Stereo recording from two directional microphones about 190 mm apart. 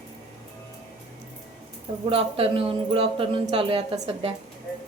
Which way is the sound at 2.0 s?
30° right (ahead or behind).